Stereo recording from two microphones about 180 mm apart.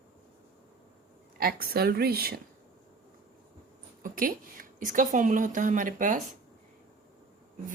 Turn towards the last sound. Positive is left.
turn(degrees=-45)  # may be behind; listen again after turning